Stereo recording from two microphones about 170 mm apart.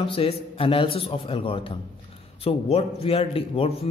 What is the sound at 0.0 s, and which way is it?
A man's voice, 30° left (ahead or behind).